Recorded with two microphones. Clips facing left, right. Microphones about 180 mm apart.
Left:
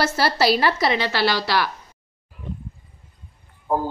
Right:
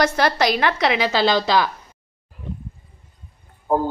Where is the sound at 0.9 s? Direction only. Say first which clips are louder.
Right 3 dB; 20° right (ahead or behind).